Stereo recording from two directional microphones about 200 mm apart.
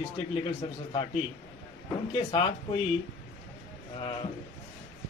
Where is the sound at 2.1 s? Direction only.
25° left (ahead or behind).